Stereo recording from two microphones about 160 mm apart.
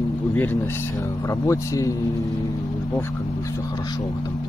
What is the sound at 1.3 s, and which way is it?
Speech, 20° left (ahead or behind).